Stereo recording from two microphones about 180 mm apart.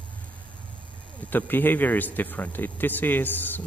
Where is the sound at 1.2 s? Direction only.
10° left (ahead or behind).